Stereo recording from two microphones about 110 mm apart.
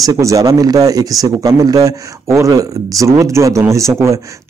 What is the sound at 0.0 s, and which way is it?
A man's voice, 30° right (ahead or behind).